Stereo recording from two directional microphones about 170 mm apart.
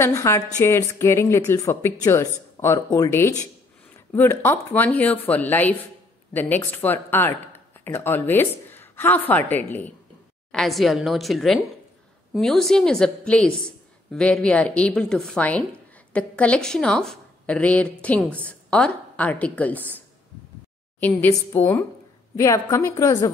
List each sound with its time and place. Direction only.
0.0 s a woman's voice: 15° left (ahead or behind)
21.0 s a woman's voice: 10° left (ahead or behind)